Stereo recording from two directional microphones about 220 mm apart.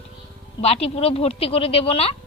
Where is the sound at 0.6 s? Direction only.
25° left (ahead or behind).